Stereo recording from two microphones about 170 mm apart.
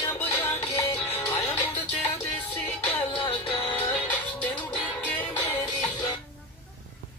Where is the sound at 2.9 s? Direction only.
10° left (ahead or behind).